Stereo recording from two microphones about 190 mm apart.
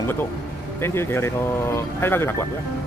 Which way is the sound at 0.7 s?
10° left (ahead or behind).